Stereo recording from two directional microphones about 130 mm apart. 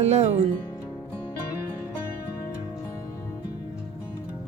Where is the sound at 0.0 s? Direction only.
60° right (ahead or behind).